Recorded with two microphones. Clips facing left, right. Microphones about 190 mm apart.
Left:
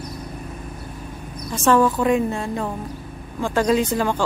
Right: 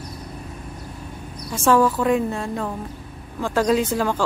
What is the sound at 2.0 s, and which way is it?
Speech, centre (ahead or behind).